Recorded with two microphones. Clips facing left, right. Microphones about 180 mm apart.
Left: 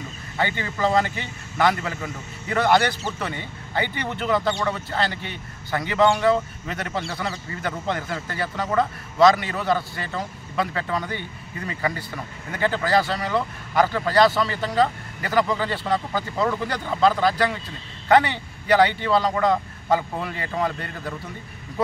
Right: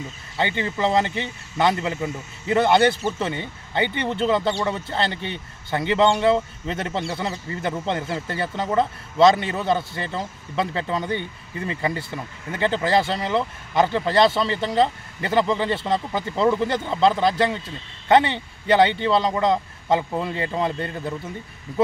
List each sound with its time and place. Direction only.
0.4 s speech: 25° right (ahead or behind)